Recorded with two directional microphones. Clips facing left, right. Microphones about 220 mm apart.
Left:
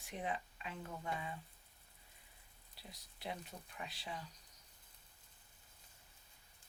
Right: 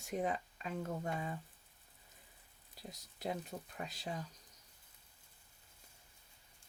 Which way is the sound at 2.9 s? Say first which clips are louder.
Right 6 dB; 45° right (ahead or behind).